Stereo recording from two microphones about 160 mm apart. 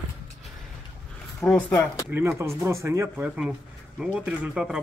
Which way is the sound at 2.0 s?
15° right (ahead or behind).